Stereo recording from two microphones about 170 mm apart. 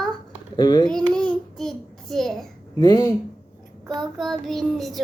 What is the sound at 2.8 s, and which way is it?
Speech, 25° left (ahead or behind).